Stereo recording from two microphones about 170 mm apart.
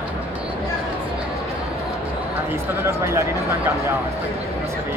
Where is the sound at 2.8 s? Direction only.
15° right (ahead or behind).